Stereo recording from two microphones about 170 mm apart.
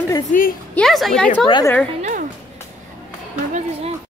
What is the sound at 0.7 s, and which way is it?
Speech, centre (ahead or behind).